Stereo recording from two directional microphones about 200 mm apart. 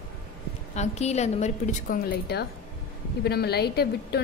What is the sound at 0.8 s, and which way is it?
A woman's voice, 35° left (ahead or behind).